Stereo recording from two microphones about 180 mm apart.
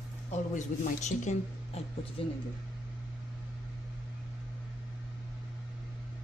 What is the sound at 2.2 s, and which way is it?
Speech, 30° left (ahead or behind).